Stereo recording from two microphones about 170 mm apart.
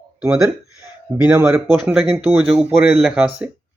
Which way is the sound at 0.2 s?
5° right (ahead or behind).